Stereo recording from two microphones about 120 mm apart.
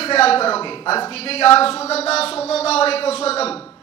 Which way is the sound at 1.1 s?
55° left (ahead or behind).